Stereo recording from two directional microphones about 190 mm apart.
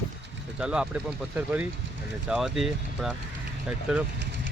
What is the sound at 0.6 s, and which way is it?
Speech, 5° right (ahead or behind).